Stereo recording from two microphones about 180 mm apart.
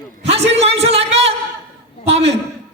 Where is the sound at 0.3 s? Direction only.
35° right (ahead or behind).